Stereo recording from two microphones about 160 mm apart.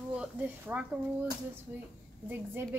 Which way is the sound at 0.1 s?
10° right (ahead or behind).